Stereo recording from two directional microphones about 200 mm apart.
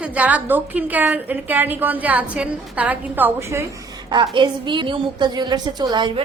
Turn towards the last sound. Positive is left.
turn(degrees=-20)  # may be behind; listen again after turning